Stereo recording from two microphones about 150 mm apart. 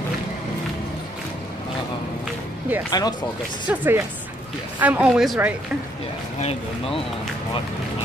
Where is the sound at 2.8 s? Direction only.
25° left (ahead or behind).